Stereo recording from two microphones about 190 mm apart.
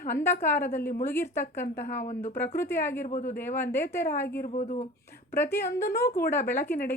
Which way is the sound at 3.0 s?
40° left (ahead or behind).